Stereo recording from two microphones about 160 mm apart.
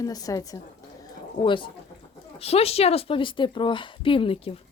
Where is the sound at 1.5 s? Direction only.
30° left (ahead or behind).